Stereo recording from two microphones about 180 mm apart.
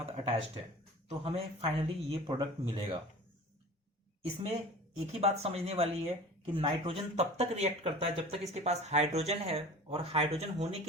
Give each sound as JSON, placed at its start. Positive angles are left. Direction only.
{"t": 0.0, "sound": "speech", "side_deg": -35}
{"t": 4.9, "sound": "speech", "side_deg": -35}